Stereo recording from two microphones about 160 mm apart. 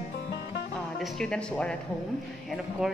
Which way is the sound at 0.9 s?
Centre (ahead or behind).